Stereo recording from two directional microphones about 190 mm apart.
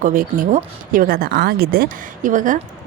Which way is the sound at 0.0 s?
45° right (ahead or behind).